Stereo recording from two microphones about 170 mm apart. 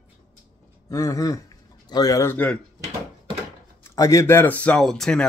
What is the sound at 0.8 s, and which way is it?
Speech, 20° left (ahead or behind).